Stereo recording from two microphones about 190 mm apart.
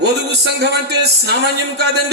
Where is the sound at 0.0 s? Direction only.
60° right (ahead or behind).